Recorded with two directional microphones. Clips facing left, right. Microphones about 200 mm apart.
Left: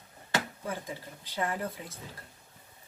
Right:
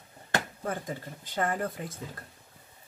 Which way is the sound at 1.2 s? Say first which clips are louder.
Right 3 dB; 50° right (ahead or behind).